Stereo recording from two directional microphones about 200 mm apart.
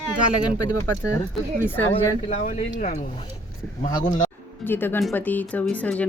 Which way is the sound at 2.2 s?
35° left (ahead or behind).